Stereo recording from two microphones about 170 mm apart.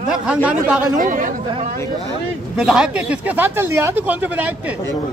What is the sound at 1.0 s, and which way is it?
Speech, 50° right (ahead or behind).